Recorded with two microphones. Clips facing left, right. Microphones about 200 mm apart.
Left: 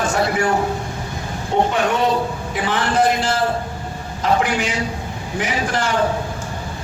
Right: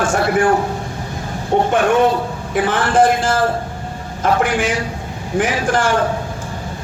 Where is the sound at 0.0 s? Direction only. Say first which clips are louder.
Right 3 dB; 50° right (ahead or behind).